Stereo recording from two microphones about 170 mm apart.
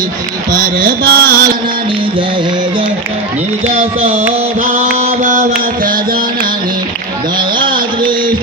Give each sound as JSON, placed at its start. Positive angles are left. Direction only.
{"t": 0.8, "sound": "music", "side_deg": -60}
{"t": 5.0, "sound": "music", "side_deg": -55}